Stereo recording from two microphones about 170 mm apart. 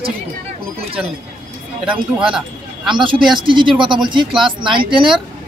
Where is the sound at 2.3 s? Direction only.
5° right (ahead or behind).